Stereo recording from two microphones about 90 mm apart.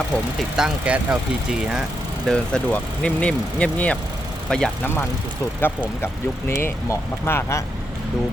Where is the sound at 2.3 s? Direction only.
10° left (ahead or behind).